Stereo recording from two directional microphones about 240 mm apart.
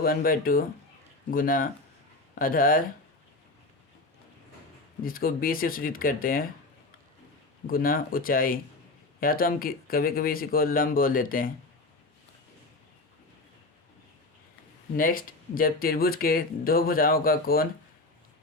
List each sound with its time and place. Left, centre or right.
0.0 s speech: left
5.0 s speech: left
7.7 s speech: left
14.9 s speech: left